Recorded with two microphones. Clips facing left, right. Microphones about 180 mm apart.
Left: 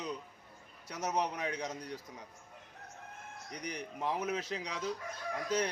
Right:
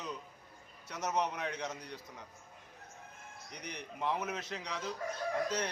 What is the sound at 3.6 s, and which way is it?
A man's voice, 10° left (ahead or behind).